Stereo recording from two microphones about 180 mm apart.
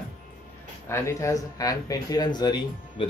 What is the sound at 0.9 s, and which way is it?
Speech, 15° left (ahead or behind).